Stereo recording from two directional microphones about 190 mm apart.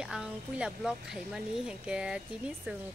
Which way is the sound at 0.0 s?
5° right (ahead or behind).